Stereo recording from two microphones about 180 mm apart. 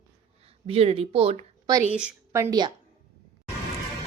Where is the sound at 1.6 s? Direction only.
20° right (ahead or behind).